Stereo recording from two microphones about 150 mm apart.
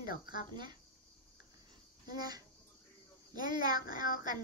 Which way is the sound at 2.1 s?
25° right (ahead or behind).